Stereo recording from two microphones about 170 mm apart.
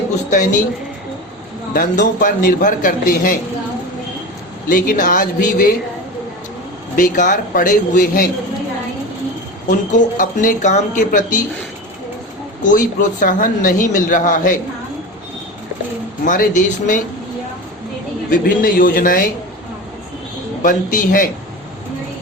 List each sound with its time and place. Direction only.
0.3 s a man's voice: 50° left (ahead or behind)
1.7 s a man's voice: 55° left (ahead or behind)
4.7 s a man's voice: 50° left (ahead or behind)
6.9 s a man's voice: 55° left (ahead or behind)
10.2 s a man's voice: 50° left (ahead or behind)
12.7 s a man's voice: 50° left (ahead or behind)
16.2 s a man's voice: 50° left (ahead or behind)
18.3 s a man's voice: 55° left (ahead or behind)
20.6 s a man's voice: 55° left (ahead or behind)